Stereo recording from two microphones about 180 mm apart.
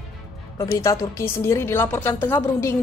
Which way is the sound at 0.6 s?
15° left (ahead or behind).